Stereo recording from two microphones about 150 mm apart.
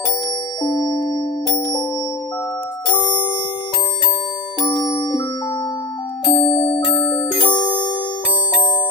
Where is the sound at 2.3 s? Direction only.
10° left (ahead or behind).